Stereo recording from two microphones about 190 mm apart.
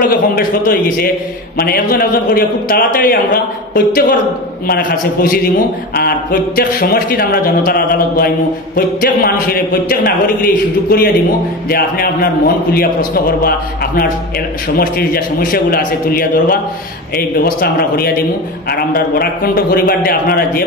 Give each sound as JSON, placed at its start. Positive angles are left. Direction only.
{"t": 0.0, "sound": "a man's voice", "side_deg": 50}
{"t": 14.8, "sound": "a man's voice", "side_deg": 50}
{"t": 17.6, "sound": "a man's voice", "side_deg": 55}